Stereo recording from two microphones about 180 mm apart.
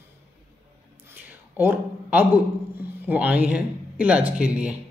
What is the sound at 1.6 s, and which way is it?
Speech, 10° right (ahead or behind).